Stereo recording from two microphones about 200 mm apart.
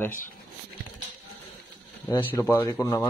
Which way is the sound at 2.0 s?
15° left (ahead or behind).